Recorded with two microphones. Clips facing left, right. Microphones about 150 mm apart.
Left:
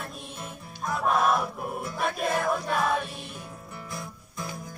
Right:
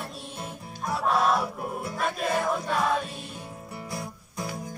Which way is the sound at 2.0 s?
5° left (ahead or behind).